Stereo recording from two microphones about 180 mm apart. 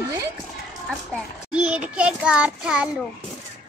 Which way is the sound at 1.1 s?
5° right (ahead or behind).